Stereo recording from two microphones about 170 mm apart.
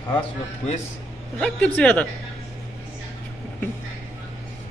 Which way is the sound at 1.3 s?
10° left (ahead or behind).